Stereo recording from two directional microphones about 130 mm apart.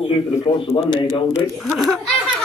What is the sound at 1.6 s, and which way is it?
Speech, centre (ahead or behind).